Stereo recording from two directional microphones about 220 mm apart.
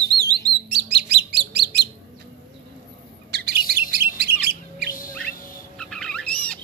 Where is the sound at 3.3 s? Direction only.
45° right (ahead or behind).